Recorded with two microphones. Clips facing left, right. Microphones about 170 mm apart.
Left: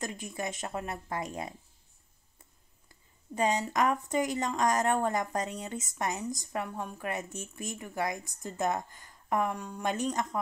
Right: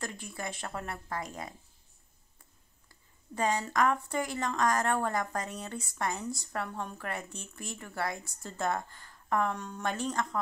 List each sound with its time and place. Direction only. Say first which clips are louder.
0.0 s a woman's voice: left 3 dB; 20° left (ahead or behind)
3.3 s a woman's voice: left 1 dB; 20° left (ahead or behind)